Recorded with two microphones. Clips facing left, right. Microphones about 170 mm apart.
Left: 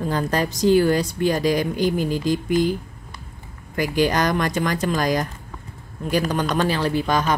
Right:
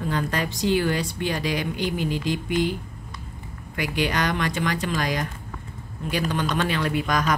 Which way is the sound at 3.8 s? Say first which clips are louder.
Left 5 dB; 40° left (ahead or behind).